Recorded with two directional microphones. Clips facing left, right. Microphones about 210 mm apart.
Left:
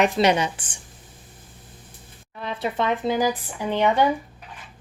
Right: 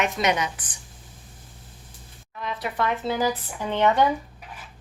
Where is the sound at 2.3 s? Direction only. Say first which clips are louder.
Left 3 dB; 30° left (ahead or behind); by 4.0 s 10° left (ahead or behind).